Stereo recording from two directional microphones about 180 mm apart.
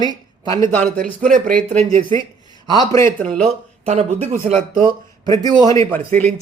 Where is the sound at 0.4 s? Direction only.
20° left (ahead or behind).